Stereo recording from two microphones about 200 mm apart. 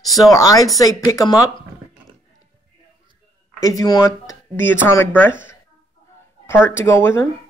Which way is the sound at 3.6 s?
20° left (ahead or behind).